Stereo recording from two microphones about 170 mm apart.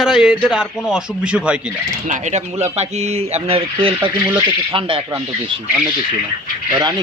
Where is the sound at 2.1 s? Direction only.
45° right (ahead or behind).